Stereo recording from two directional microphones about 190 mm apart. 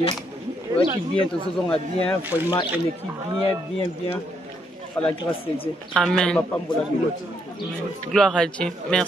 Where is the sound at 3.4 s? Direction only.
30° left (ahead or behind).